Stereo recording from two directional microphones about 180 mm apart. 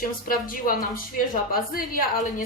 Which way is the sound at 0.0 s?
50° left (ahead or behind).